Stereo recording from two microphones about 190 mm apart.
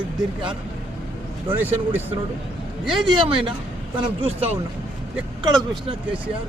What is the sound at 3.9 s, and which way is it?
Speech, 30° right (ahead or behind).